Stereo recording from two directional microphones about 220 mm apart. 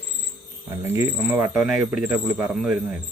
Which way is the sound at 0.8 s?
10° right (ahead or behind).